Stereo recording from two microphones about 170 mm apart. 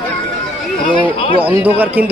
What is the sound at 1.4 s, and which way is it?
Speech, 10° right (ahead or behind).